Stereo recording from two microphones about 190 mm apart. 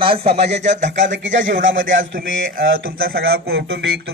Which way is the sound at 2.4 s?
50° right (ahead or behind).